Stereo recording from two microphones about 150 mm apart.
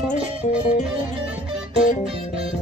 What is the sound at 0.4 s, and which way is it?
Music, 60° left (ahead or behind).